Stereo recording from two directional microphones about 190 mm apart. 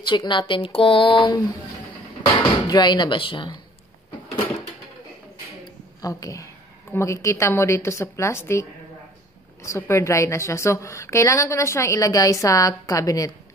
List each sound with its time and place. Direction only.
0.0 s speech: 25° left (ahead or behind)
2.7 s speech: 25° left (ahead or behind)
5.9 s a woman's voice: 20° left (ahead or behind)